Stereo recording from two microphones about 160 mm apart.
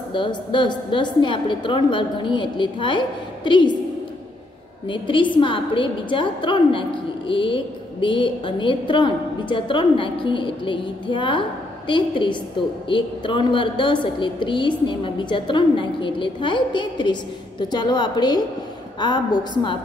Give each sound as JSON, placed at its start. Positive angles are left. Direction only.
{"t": 0.1, "sound": "a woman's voice", "side_deg": 30}
{"t": 4.8, "sound": "a woman's voice", "side_deg": 30}